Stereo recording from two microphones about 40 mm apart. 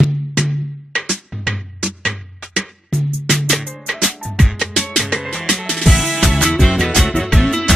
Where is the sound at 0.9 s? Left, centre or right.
Centre.